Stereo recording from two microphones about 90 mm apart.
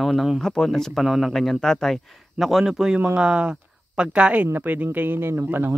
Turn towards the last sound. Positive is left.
turn(degrees=-25)  # may be behind; listen again after turning